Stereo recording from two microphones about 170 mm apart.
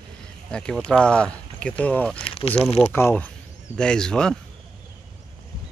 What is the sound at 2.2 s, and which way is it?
Speech, 35° left (ahead or behind).